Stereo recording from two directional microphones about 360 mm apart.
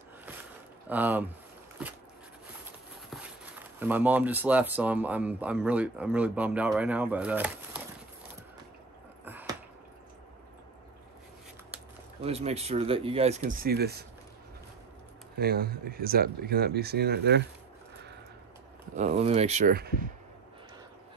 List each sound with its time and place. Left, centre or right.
0.8 s speech: centre
3.1 s speech: centre
9.2 s a sound: centre
12.2 s speech: centre
15.3 s speech: right
18.9 s speech: centre